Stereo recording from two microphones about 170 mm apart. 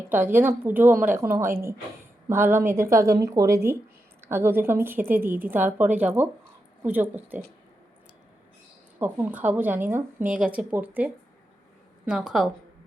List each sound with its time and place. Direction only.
0.1 s speech: 15° right (ahead or behind)
9.0 s a woman's voice: 10° right (ahead or behind)